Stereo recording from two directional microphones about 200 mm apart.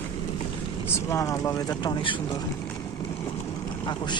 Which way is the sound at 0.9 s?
15° left (ahead or behind).